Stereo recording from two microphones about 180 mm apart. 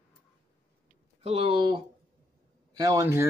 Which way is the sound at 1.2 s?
35° right (ahead or behind).